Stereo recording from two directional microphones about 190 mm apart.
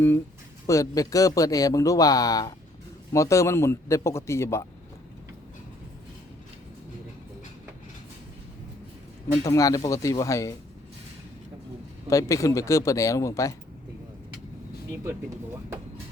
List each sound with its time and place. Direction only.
0.7 s a man's voice: 15° left (ahead or behind)
9.4 s a man's voice: 20° left (ahead or behind)
12.0 s a man's voice: 15° left (ahead or behind)